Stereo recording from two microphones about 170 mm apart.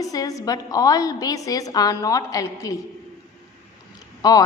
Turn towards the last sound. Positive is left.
turn(degrees=20)  # may be behind; listen again after turning